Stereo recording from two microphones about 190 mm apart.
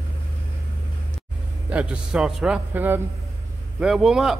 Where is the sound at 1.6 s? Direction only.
5° right (ahead or behind).